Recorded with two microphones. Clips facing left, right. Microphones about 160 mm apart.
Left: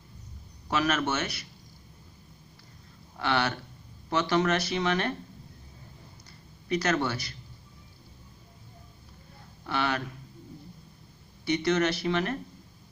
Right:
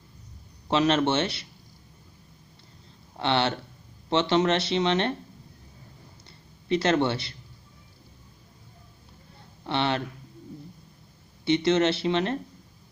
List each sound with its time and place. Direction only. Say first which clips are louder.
0.7 s speech: right 5 dB; 25° right (ahead or behind)
3.2 s speech: right 3 dB; 25° right (ahead or behind)
6.2 s a sound: right 6 dB; 25° right (ahead or behind)
9.7 s speech: right 3 dB; 25° right (ahead or behind)
11.4 s speech: right 4 dB; 25° right (ahead or behind)